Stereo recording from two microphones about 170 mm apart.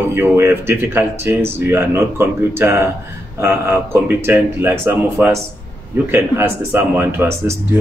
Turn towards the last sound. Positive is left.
turn(degrees=-15)  # may be behind; listen again after turning